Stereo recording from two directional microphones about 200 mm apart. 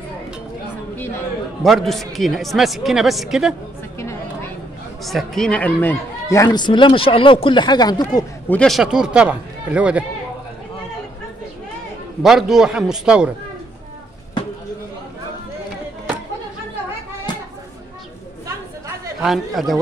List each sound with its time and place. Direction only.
1.6 s a man's voice: centre (ahead or behind)
4.0 s a sound: 15° left (ahead or behind)
5.0 s speech: centre (ahead or behind); by 8.3 s 20° left (ahead or behind)
8.5 s a man's voice: 5° left (ahead or behind)
12.2 s a man's voice: centre (ahead or behind)
19.2 s a man's voice: centre (ahead or behind)